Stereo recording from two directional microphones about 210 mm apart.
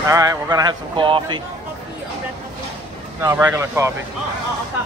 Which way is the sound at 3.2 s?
10° right (ahead or behind).